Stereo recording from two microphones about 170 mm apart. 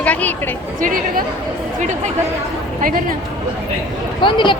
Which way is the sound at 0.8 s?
50° right (ahead or behind).